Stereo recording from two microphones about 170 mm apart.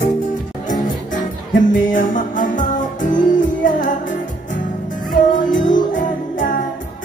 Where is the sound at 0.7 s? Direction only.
50° left (ahead or behind).